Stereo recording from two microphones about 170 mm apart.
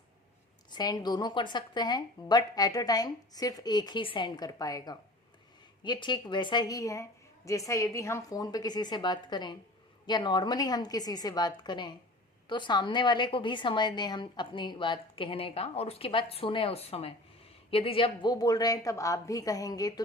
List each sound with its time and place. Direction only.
0.7 s a woman's voice: 25° left (ahead or behind)